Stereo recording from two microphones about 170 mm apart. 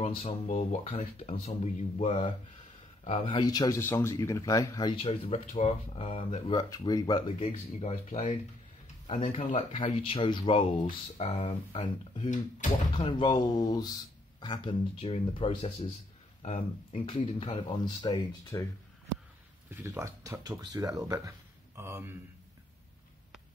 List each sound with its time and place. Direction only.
0.0 s speech: 35° left (ahead or behind)
5.0 s speech: 40° left (ahead or behind)
6.9 s speech: 25° left (ahead or behind)
12.3 s speech: 45° left (ahead or behind)
12.9 s speech: 30° left (ahead or behind)
19.7 s speech: 10° right (ahead or behind)